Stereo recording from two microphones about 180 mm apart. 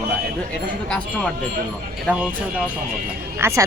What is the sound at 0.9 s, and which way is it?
Speech, 5° left (ahead or behind).